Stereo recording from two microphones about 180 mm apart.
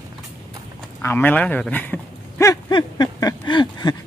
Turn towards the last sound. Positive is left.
turn(degrees=25)  # may be behind; listen again after turning